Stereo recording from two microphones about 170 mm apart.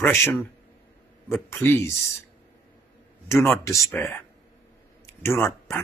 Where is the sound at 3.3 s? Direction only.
15° left (ahead or behind).